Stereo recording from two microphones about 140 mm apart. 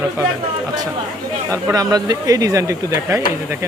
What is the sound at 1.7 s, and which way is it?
Speech, 25° right (ahead or behind).